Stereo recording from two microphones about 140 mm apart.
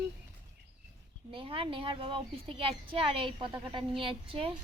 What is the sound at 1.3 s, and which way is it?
A woman's voice, 35° right (ahead or behind).